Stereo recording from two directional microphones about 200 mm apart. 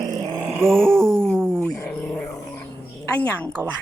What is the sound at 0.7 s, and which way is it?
Speech, centre (ahead or behind).